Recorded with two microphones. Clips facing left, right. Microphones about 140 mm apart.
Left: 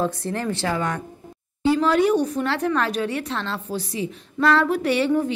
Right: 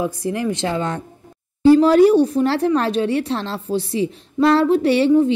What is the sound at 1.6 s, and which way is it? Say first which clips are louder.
Speech: right 8 dB; 40° right (ahead or behind).